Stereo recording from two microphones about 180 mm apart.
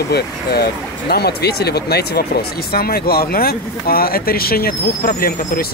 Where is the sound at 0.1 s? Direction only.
60° left (ahead or behind).